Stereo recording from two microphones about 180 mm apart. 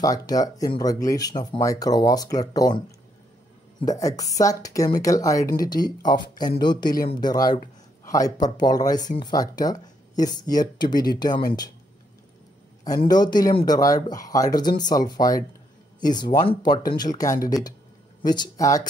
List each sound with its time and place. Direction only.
0.0 s speech: 20° left (ahead or behind)
3.8 s speech: 20° left (ahead or behind)
13.1 s speech: 20° left (ahead or behind)